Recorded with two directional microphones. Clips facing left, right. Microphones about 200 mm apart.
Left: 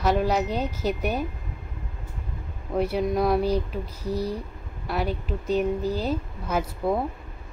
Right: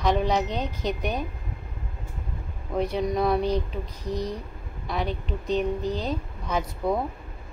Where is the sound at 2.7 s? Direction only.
5° left (ahead or behind).